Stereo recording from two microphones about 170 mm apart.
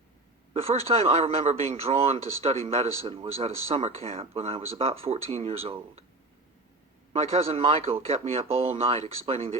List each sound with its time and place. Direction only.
0.6 s speech: 35° right (ahead or behind)
7.1 s speech: 35° right (ahead or behind)